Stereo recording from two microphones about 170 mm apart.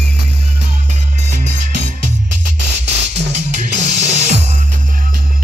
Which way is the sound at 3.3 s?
45° right (ahead or behind).